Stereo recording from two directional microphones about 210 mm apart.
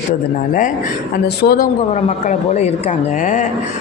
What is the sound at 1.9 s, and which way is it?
A man's voice, 30° left (ahead or behind).